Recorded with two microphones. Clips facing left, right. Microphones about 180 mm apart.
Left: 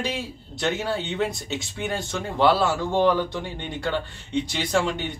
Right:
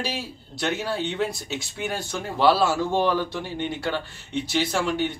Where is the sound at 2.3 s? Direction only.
20° left (ahead or behind).